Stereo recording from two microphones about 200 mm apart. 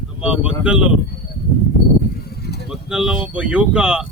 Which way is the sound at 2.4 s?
50° left (ahead or behind).